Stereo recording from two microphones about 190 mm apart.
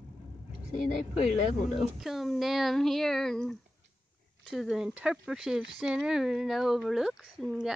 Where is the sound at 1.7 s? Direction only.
Centre (ahead or behind).